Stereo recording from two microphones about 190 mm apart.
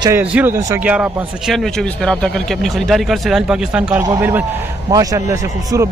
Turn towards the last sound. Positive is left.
turn(degrees=-15)  # may be behind; listen again after turning